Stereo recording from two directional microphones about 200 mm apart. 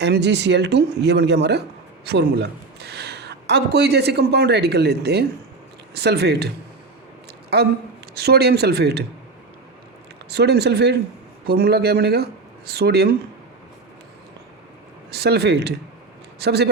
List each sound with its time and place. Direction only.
0.0 s a woman's voice: 60° right (ahead or behind)
7.5 s speech: 55° right (ahead or behind)
10.2 s speech: 55° right (ahead or behind)
15.1 s speech: 55° right (ahead or behind)